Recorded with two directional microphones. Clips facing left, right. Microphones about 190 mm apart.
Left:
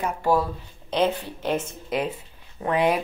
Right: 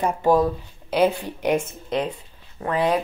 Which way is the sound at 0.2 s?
20° right (ahead or behind).